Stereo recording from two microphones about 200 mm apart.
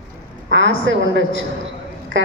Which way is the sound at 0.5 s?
65° right (ahead or behind).